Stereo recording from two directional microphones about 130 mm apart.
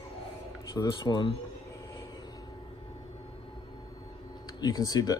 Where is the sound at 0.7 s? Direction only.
30° left (ahead or behind).